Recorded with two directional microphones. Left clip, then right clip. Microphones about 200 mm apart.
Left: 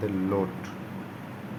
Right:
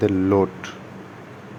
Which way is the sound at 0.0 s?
45° right (ahead or behind).